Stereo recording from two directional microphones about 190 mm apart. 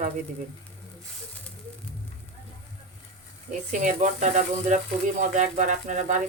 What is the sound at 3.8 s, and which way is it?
Speech, 40° right (ahead or behind).